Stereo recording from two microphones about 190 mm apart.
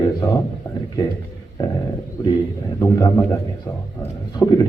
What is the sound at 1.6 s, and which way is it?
A man's voice, 15° left (ahead or behind).